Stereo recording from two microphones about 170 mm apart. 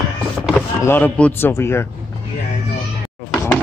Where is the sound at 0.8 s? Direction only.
10° left (ahead or behind).